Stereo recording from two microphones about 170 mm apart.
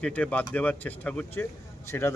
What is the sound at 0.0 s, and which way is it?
A man's voice, 5° left (ahead or behind).